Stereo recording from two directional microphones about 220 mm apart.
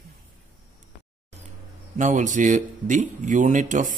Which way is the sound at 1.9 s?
35° right (ahead or behind).